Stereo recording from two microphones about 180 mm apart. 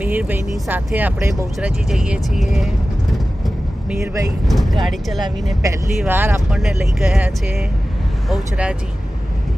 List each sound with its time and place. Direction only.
0.0 s speech: 10° right (ahead or behind)
1.9 s speech: centre (ahead or behind)
3.8 s speech: 15° right (ahead or behind)
4.4 s speech: centre (ahead or behind)
5.6 s speech: 15° right (ahead or behind)